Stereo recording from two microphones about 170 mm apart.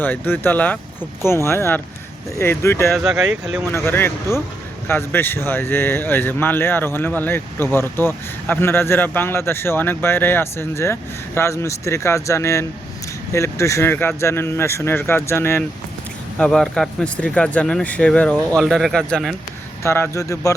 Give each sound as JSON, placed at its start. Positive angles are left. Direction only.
{"t": 0.0, "sound": "speech", "side_deg": 10}
{"t": 2.9, "sound": "speech", "side_deg": 0}
{"t": 3.7, "sound": "speech", "side_deg": 15}
{"t": 16.4, "sound": "speech", "side_deg": 5}
{"t": 19.8, "sound": "speech", "side_deg": 15}